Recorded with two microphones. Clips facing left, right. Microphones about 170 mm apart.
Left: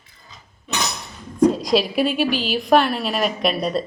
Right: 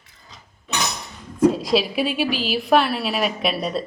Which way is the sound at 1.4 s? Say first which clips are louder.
Left 1 dB; 5° right (ahead or behind).